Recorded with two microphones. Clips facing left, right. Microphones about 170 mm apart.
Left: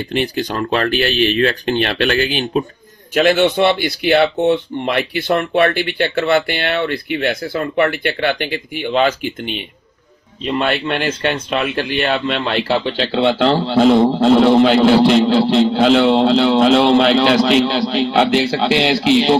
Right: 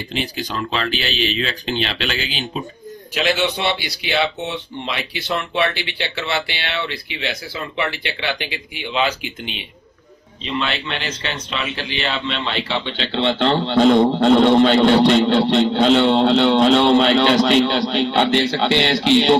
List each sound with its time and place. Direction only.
0.1 s speech: 60° left (ahead or behind)
12.9 s a man's voice: 5° left (ahead or behind)